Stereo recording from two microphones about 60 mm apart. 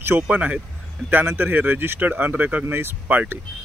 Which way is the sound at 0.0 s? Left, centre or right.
Right.